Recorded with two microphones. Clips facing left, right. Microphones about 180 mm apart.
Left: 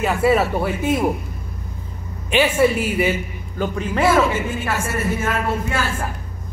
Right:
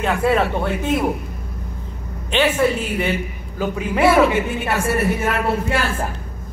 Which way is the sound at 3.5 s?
10° right (ahead or behind).